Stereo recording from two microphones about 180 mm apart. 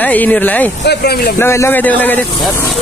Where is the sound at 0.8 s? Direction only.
65° left (ahead or behind).